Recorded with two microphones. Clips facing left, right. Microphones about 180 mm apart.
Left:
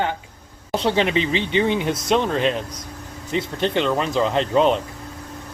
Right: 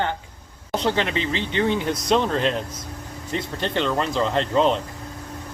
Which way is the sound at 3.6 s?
5° left (ahead or behind).